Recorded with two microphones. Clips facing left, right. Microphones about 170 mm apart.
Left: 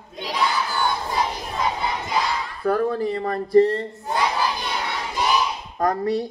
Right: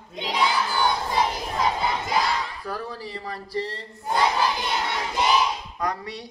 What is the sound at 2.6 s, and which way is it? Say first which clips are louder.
Speech: left 12 dB; 50° left (ahead or behind).